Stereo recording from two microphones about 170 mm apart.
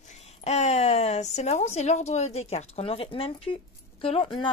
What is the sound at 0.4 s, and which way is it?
A woman's voice, 40° left (ahead or behind).